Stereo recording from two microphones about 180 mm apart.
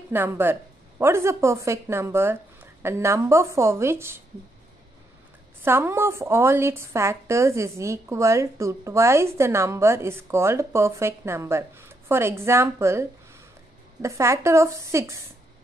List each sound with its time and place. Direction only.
0.1 s a woman's voice: 10° right (ahead or behind)
5.6 s a woman's voice: 10° right (ahead or behind)
14.0 s a woman's voice: 15° right (ahead or behind)